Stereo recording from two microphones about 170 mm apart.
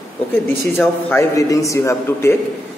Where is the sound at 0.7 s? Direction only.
15° left (ahead or behind).